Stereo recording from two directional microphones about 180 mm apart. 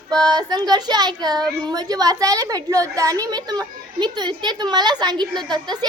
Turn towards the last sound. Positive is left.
turn(degrees=-25)  # may be behind; listen again after turning